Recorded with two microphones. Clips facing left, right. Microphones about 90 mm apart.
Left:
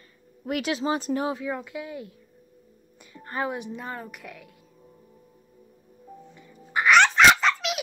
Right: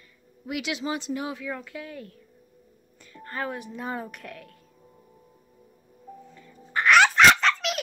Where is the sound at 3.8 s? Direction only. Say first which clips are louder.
Right 3 dB; 5° right (ahead or behind).